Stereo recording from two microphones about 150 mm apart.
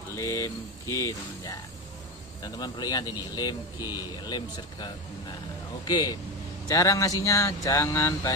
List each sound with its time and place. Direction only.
0.1 s speech: 20° left (ahead or behind)